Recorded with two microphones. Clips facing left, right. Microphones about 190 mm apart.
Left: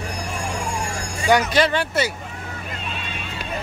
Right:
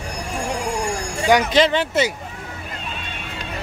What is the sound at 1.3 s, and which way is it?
Speech, 20° right (ahead or behind).